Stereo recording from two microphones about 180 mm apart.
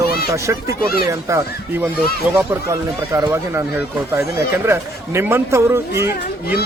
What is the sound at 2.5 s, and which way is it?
Speech, 15° right (ahead or behind).